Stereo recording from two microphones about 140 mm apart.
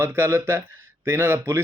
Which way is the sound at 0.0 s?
15° right (ahead or behind).